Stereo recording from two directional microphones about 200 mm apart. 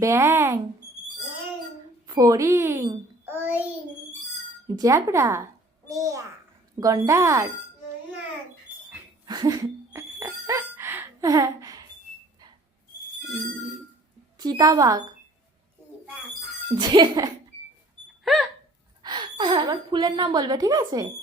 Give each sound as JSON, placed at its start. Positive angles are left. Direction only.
{"t": 0.0, "sound": "speech", "side_deg": -15}
{"t": 2.0, "sound": "a child's voice", "side_deg": -15}
{"t": 4.8, "sound": "speech", "side_deg": -15}
{"t": 9.2, "sound": "music", "side_deg": -20}
{"t": 14.3, "sound": "a woman's voice", "side_deg": -20}
{"t": 16.7, "sound": "a woman's voice", "side_deg": -20}
{"t": 18.3, "sound": "a sound", "side_deg": 0}
{"t": 19.0, "sound": "a woman's voice", "side_deg": -25}